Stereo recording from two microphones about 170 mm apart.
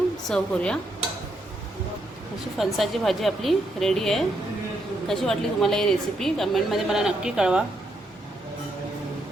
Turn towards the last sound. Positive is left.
turn(degrees=-5)  # may be behind; listen again after turning